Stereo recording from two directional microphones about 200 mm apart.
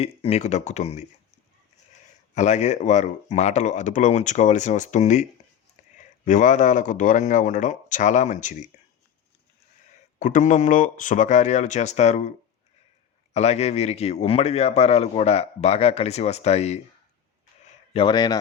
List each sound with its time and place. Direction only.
0.0 s speech: 30° left (ahead or behind)
2.3 s speech: 35° left (ahead or behind)
10.2 s speech: 40° left (ahead or behind)
13.3 s speech: 35° left (ahead or behind)
17.7 s a sound: 25° left (ahead or behind)